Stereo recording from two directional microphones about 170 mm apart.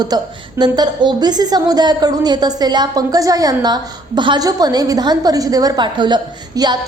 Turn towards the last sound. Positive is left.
turn(degrees=-25)  # may be behind; listen again after turning